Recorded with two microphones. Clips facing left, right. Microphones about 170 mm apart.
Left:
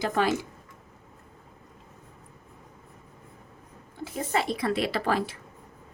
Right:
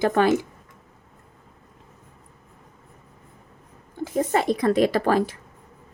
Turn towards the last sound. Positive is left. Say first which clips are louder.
# right 7 dB
turn(degrees=-45)  # may be behind; listen again after turning